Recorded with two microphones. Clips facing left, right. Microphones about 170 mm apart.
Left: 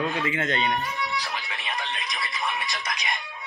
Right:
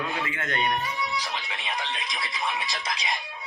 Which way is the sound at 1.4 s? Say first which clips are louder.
Even; 20° right (ahead or behind).